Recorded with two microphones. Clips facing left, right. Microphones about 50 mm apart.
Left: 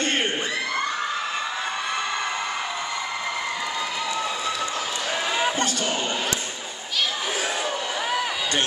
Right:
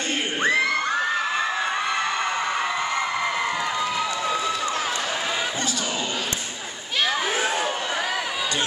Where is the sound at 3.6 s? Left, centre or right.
Right.